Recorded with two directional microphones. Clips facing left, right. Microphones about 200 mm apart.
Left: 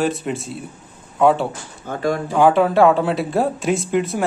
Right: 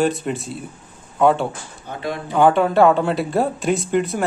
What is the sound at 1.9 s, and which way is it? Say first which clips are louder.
Speech: left 6 dB; 45° left (ahead or behind).